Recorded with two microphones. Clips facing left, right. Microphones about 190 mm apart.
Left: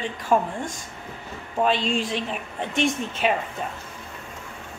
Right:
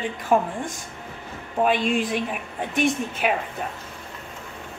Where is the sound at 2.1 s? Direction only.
5° right (ahead or behind).